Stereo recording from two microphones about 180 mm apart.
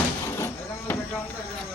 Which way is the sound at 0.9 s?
10° left (ahead or behind).